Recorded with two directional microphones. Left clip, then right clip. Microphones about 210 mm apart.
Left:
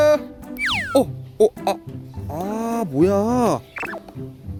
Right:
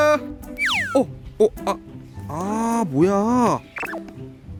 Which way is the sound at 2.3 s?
5° right (ahead or behind).